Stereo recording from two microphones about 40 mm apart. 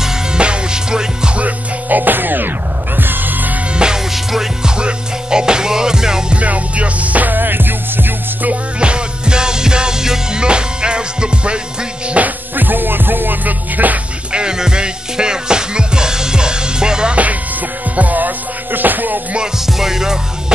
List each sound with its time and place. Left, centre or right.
0.4 s music: right
1.9 s music: right
3.7 s music: right
4.1 s music: centre
4.7 s music: right
6.3 s music: right
8.7 s music: right
10.4 s music: right
12.2 s music: right
12.5 s music: right
14.3 s music: centre
17.9 s music: right
19.6 s music: centre